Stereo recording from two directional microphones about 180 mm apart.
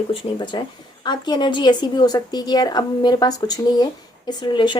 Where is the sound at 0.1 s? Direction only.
30° left (ahead or behind).